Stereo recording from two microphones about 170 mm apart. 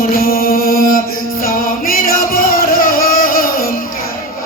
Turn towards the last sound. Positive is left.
turn(degrees=55)  # may be behind; listen again after turning